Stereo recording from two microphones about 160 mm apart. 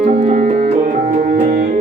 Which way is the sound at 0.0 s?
50° right (ahead or behind).